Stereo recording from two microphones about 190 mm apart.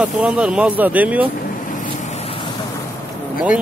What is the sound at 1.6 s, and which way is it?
Vehicle, 45° left (ahead or behind).